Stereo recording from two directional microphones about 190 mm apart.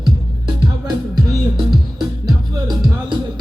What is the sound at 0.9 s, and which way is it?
Music, 20° right (ahead or behind).